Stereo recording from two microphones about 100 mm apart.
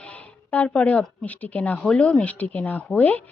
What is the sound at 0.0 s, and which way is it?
A woman's voice, 15° left (ahead or behind).